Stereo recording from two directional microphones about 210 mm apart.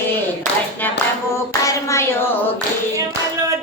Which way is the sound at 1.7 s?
15° left (ahead or behind).